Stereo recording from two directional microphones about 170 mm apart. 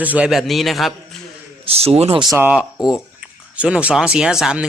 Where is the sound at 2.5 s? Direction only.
5° right (ahead or behind).